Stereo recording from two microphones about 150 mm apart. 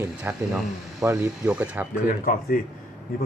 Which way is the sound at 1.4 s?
10° right (ahead or behind).